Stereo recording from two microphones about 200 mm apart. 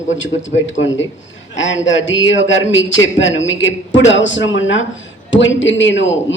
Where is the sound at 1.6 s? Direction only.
70° left (ahead or behind).